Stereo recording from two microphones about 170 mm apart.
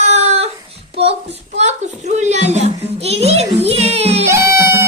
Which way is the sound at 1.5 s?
40° right (ahead or behind).